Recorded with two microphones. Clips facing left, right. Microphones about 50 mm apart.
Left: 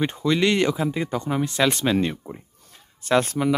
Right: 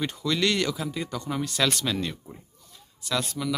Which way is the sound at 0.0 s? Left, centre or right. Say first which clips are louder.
Left 5 dB; left.